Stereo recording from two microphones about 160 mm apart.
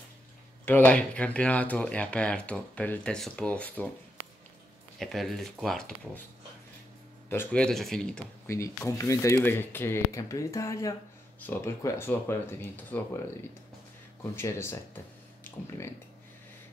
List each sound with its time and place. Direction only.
0.7 s speech: 10° left (ahead or behind)
4.9 s speech: centre (ahead or behind)
7.2 s speech: 10° left (ahead or behind)
8.5 s speech: 20° left (ahead or behind)
14.3 s speech: 15° left (ahead or behind)